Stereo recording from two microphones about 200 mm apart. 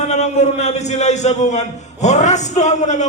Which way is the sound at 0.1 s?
35° left (ahead or behind).